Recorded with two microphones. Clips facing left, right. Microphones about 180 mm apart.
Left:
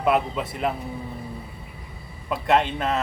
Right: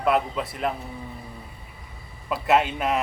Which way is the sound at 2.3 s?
5° right (ahead or behind).